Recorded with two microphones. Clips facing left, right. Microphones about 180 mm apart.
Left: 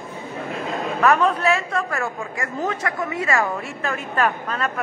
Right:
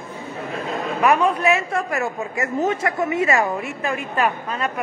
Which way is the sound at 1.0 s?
10° right (ahead or behind).